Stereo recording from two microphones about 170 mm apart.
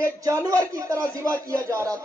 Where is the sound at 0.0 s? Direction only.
20° right (ahead or behind).